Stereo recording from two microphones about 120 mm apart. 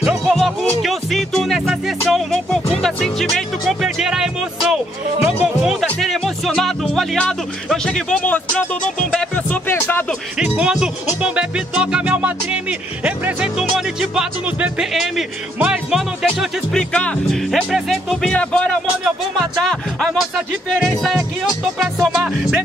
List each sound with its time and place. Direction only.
0.0 s music: centre (ahead or behind)
5.8 s music: 5° left (ahead or behind)
10.4 s music: 10° right (ahead or behind)
13.0 s speech: 10° right (ahead or behind)
21.7 s music: centre (ahead or behind)